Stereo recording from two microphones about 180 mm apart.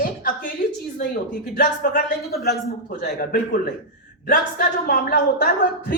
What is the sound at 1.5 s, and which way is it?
Speech, 50° left (ahead or behind).